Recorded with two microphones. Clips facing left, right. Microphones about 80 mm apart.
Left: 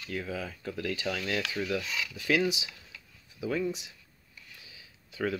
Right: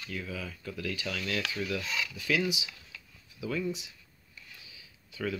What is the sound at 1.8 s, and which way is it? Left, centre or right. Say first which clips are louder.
Speech: right 1 dB; centre.